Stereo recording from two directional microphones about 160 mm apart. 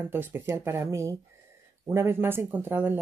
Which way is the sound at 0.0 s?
10° right (ahead or behind).